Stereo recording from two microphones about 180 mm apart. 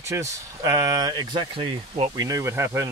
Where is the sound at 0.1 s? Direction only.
15° right (ahead or behind).